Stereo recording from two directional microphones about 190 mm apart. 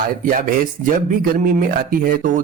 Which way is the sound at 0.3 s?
45° right (ahead or behind).